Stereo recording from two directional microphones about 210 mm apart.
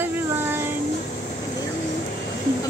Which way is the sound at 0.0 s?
10° right (ahead or behind).